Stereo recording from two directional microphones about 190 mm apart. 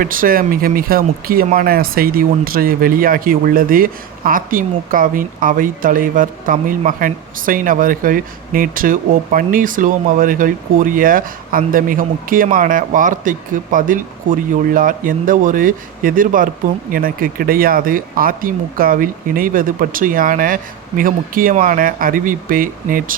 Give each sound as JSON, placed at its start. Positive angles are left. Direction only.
{"t": 0.0, "sound": "speech", "side_deg": -50}